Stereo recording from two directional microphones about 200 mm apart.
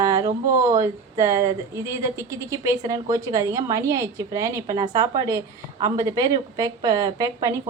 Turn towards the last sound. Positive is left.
turn(degrees=-15)  # may be behind; listen again after turning